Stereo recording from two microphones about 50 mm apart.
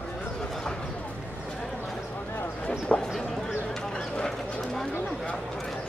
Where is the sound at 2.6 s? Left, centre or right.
Left.